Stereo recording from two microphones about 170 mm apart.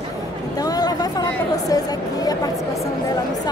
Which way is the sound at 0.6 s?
20° left (ahead or behind).